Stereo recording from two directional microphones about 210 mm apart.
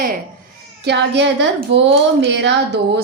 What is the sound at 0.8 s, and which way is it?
A woman's voice, 55° right (ahead or behind).